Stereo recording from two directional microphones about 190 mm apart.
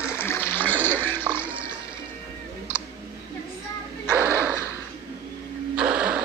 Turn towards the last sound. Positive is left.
turn(degrees=-5)  # may be behind; listen again after turning